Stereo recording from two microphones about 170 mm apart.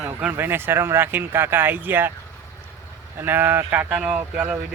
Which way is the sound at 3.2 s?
10° right (ahead or behind).